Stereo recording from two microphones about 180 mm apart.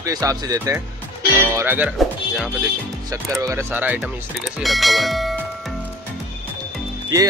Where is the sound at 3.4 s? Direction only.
15° right (ahead or behind); by 5.3 s centre (ahead or behind).